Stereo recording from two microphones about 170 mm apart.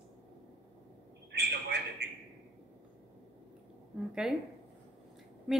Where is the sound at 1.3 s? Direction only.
80° right.